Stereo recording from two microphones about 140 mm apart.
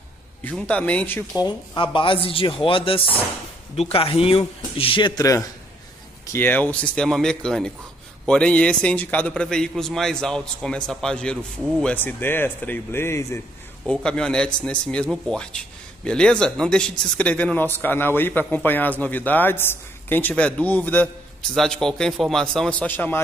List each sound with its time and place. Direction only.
0.4 s speech: 10° left (ahead or behind)
1.8 s speech: 35° left (ahead or behind)
6.3 s speech: 15° left (ahead or behind)
13.8 s speech: 5° left (ahead or behind)